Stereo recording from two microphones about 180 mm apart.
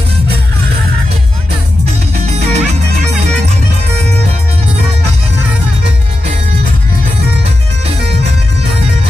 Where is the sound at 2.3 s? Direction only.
40° right (ahead or behind).